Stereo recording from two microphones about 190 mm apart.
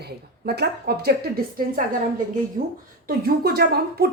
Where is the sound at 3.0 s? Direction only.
55° right (ahead or behind).